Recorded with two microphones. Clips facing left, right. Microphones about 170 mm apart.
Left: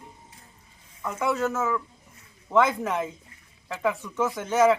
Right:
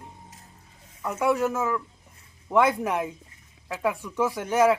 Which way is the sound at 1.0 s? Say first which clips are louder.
Right 2 dB; 10° right (ahead or behind).